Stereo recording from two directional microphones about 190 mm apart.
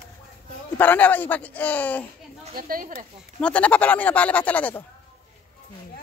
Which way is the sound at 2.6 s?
50° right (ahead or behind).